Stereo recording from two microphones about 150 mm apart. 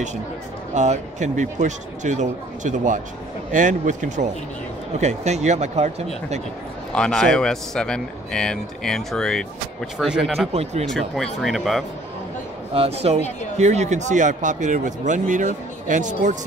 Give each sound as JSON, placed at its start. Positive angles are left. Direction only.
{"t": 0.7, "sound": "speech", "side_deg": -50}
{"t": 6.9, "sound": "a man's voice", "side_deg": 5}
{"t": 10.5, "sound": "speech", "side_deg": -45}
{"t": 10.9, "sound": "a man's voice", "side_deg": 0}
{"t": 12.7, "sound": "a man's voice", "side_deg": -40}